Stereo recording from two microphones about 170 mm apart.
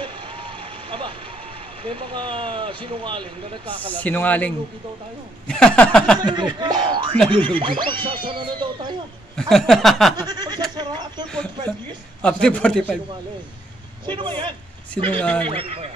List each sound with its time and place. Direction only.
0.0 s vehicle: 30° right (ahead or behind)
1.9 s speech: 30° right (ahead or behind)
4.0 s a man's voice: 10° left (ahead or behind)
5.5 s speech: 5° left (ahead or behind)
6.1 s speech: 25° right (ahead or behind)
9.5 s speech: centre (ahead or behind)
10.2 s speech: 25° right (ahead or behind)
12.2 s a man's voice: 5° left (ahead or behind)
14.0 s speech: 30° right (ahead or behind)
15.0 s a man's voice: 10° left (ahead or behind)
15.4 s speech: 35° right (ahead or behind)